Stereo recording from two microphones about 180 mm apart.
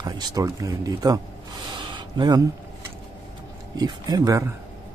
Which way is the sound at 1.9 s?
25° right (ahead or behind).